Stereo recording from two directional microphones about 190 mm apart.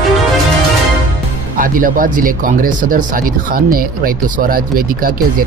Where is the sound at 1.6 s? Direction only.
45° right (ahead or behind).